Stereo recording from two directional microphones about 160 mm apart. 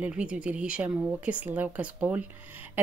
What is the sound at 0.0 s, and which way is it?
A woman's voice, 10° right (ahead or behind).